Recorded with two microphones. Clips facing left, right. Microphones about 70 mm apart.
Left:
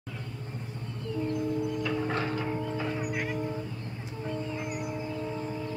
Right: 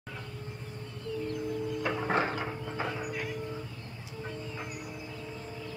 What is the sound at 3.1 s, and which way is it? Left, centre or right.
Vehicle, left.